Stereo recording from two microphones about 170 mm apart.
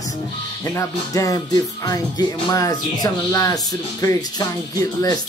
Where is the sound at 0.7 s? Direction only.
20° left (ahead or behind).